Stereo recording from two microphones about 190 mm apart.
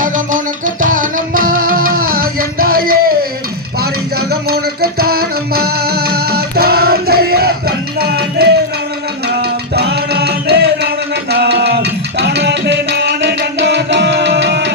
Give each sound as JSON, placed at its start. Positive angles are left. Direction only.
{"t": 0.0, "sound": "music", "side_deg": -45}